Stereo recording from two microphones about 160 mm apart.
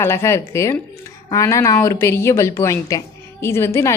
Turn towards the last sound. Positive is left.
turn(degrees=15)  # may be behind; listen again after turning